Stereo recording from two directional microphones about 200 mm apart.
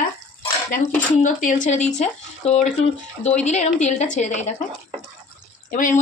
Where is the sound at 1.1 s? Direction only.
40° left (ahead or behind).